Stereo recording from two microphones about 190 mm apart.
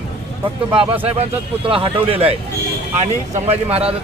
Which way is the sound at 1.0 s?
30° right (ahead or behind).